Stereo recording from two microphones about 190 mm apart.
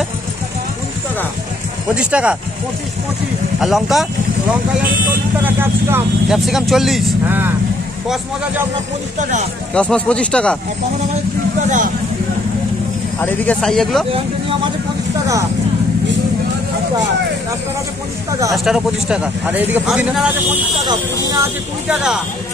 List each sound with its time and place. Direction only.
2.0 s a man's voice: 5° right (ahead or behind)
3.6 s a man's voice: centre (ahead or behind)
9.2 s speech: 40° right (ahead or behind)
9.8 s a man's voice: 5° left (ahead or behind)
13.2 s a man's voice: 5° left (ahead or behind)
18.6 s a man's voice: 5° right (ahead or behind)
20.8 s speech: 20° right (ahead or behind)
21.8 s a man's voice: 5° right (ahead or behind)